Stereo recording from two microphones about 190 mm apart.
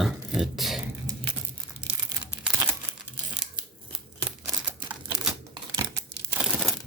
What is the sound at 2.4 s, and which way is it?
Crumpling, 10° right (ahead or behind).